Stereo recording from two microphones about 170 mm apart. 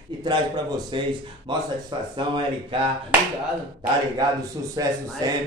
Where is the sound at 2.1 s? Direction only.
30° right (ahead or behind).